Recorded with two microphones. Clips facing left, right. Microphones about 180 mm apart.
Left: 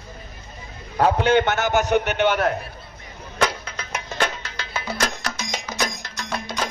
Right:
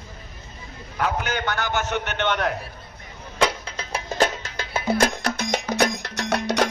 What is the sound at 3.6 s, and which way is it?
Music, 30° right (ahead or behind).